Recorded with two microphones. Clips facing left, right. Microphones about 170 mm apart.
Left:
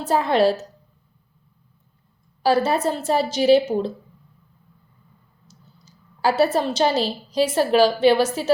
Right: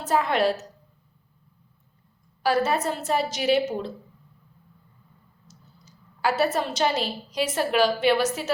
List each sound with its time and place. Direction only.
0.0 s a woman's voice: 30° left (ahead or behind)
2.4 s a woman's voice: 30° left (ahead or behind)
5.5 s a woman's voice: 30° left (ahead or behind)